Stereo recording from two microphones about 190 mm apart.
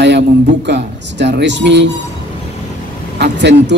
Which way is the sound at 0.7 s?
65° right (ahead or behind).